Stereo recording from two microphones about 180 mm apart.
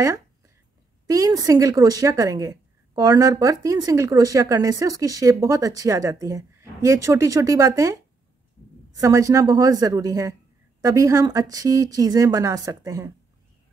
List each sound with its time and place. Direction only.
1.0 s a woman's voice: 20° right (ahead or behind)